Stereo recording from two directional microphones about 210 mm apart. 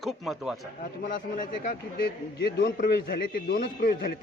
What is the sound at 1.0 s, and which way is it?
A man's voice, 40° left (ahead or behind).